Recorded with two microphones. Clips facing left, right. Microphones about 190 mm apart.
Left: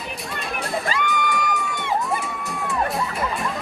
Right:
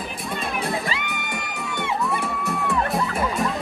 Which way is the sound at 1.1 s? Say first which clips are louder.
Left 8 dB; 60° right (ahead or behind).